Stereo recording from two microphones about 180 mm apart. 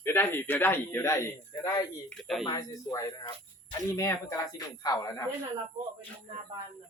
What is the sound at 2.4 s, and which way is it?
Speech, 20° left (ahead or behind).